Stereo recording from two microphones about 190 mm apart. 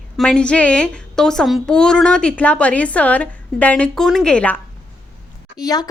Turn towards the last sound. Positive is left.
turn(degrees=20)  # may be behind; listen again after turning